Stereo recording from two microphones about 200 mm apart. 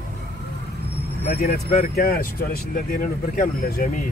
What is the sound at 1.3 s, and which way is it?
Speech, 45° left (ahead or behind).